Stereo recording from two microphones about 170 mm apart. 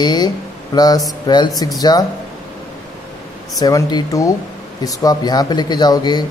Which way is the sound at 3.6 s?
25° left (ahead or behind).